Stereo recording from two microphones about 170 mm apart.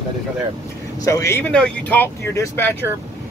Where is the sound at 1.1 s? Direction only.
15° left (ahead or behind).